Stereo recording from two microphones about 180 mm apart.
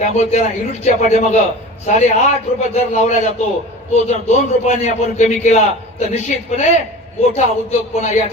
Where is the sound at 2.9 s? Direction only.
40° left (ahead or behind).